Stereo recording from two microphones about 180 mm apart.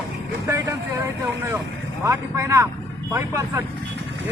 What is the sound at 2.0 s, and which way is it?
Speech, 15° right (ahead or behind).